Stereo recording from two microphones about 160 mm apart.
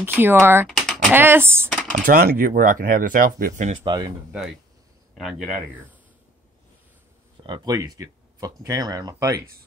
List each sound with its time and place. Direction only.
0.0 s speech: 15° right (ahead or behind)
1.9 s speech: 60° right (ahead or behind)
3.8 s speech: 25° right (ahead or behind)
5.1 s speech: centre (ahead or behind)
7.4 s speech: 25° right (ahead or behind)